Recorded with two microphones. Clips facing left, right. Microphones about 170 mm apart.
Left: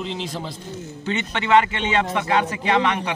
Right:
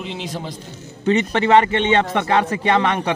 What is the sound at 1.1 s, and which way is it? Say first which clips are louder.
A man's voice: right 5 dB; 35° right (ahead or behind).